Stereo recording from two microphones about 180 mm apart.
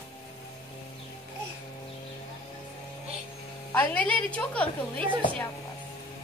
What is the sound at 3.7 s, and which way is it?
A woman's voice, 10° left (ahead or behind).